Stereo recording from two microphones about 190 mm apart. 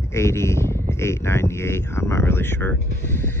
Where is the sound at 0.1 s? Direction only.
15° left (ahead or behind).